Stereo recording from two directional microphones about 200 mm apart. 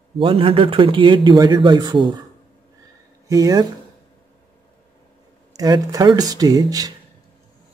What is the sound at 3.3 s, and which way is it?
Speech, 20° right (ahead or behind).